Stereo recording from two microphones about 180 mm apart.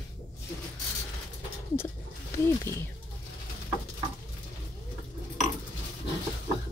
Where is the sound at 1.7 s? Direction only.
15° left (ahead or behind).